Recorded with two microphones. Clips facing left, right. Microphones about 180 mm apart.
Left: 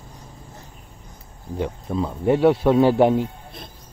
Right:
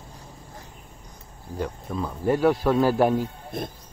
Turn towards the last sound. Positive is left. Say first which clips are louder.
# left 4 dB
turn(degrees=20)  # may be behind; listen again after turning